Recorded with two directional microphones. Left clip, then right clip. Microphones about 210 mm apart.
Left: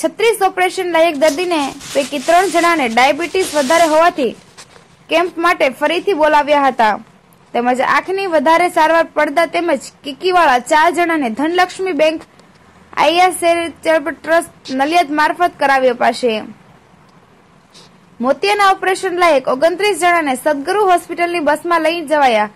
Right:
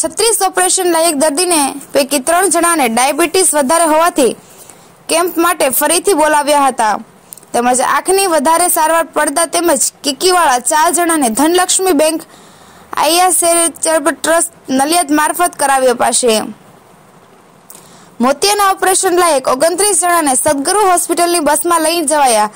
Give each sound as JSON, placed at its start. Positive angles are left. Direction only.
{"t": 0.0, "sound": "a woman's voice", "side_deg": -35}
{"t": 18.2, "sound": "a woman's voice", "side_deg": -35}